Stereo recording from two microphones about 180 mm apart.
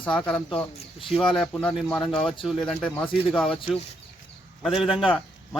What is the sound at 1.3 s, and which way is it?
Speech, 5° left (ahead or behind).